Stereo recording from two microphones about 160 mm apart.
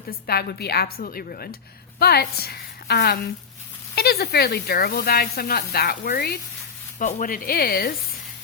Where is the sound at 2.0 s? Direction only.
80° left.